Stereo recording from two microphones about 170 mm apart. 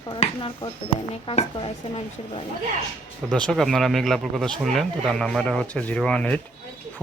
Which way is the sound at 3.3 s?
5° left (ahead or behind).